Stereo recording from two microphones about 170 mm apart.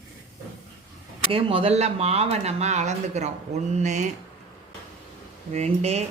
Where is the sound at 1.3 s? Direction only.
30° right (ahead or behind).